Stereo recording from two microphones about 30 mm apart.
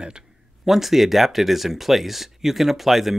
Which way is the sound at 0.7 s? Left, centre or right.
Centre.